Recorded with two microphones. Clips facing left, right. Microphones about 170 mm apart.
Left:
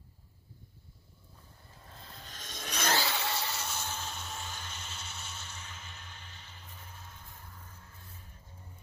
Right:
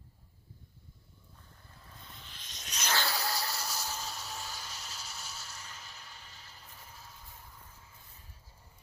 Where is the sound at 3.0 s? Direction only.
Centre (ahead or behind).